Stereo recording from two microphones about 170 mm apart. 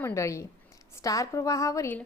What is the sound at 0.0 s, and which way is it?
A woman's voice, 15° left (ahead or behind).